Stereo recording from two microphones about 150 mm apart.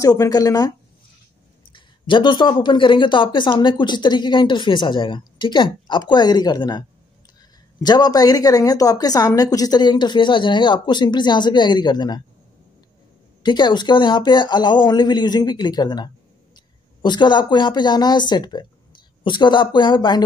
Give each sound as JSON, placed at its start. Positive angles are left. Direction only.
{"t": 0.0, "sound": "a woman's voice", "side_deg": 25}
{"t": 1.7, "sound": "a woman's voice", "side_deg": 35}
{"t": 7.8, "sound": "a woman's voice", "side_deg": 25}
{"t": 13.4, "sound": "a woman's voice", "side_deg": 30}